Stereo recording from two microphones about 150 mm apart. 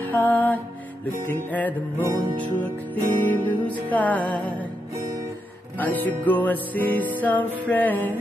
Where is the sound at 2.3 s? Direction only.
30° right (ahead or behind).